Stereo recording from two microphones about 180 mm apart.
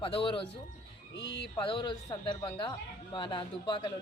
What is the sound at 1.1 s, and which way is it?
Speech, 75° left (ahead or behind).